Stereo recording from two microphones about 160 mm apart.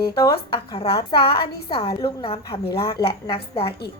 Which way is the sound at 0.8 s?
35° left (ahead or behind).